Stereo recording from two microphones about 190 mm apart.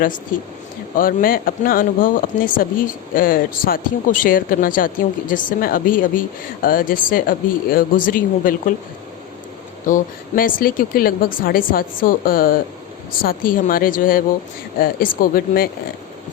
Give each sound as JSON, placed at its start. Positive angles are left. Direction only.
{"t": 0.3, "sound": "speech", "side_deg": 45}
{"t": 9.8, "sound": "speech", "side_deg": 45}